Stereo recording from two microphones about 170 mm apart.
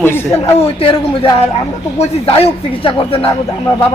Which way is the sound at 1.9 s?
35° left (ahead or behind).